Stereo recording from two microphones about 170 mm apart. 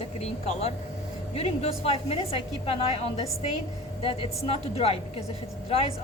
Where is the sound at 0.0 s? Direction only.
35° left (ahead or behind).